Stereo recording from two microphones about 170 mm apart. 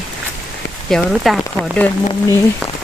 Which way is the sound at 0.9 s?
Centre (ahead or behind).